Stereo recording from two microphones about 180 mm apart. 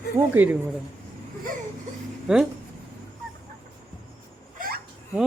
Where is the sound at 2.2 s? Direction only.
5° right (ahead or behind).